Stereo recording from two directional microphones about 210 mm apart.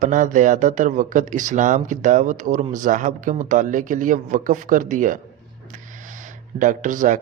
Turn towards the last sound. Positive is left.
turn(degrees=-40)  # may be behind; listen again after turning